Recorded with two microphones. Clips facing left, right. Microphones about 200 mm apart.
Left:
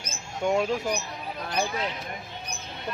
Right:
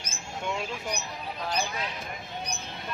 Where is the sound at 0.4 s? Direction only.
45° left (ahead or behind).